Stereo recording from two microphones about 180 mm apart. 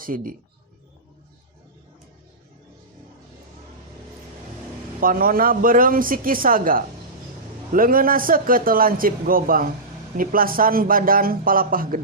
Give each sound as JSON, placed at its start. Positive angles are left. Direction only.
{"t": 0.0, "sound": "a man's voice", "side_deg": -50}
{"t": 4.9, "sound": "a man's voice", "side_deg": -50}